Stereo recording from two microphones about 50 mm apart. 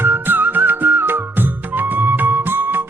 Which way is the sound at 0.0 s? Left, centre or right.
Right.